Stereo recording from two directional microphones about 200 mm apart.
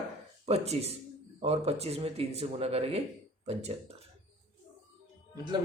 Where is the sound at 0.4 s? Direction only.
30° right (ahead or behind).